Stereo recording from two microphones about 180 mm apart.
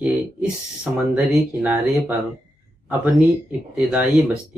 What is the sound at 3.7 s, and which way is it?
Speech, 10° right (ahead or behind).